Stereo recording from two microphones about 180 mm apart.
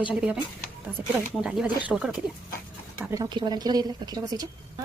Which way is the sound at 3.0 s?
20° right (ahead or behind).